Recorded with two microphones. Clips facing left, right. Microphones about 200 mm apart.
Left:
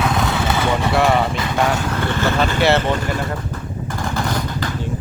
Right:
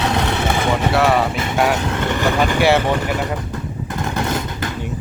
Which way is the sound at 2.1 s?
15° right (ahead or behind).